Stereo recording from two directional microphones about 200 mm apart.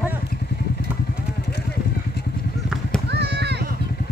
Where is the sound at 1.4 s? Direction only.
55° left (ahead or behind).